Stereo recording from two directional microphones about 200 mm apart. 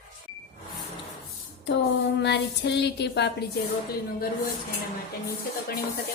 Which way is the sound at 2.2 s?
60° left (ahead or behind).